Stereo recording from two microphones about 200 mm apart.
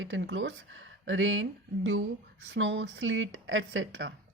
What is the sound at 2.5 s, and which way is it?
Speech, 65° right (ahead or behind).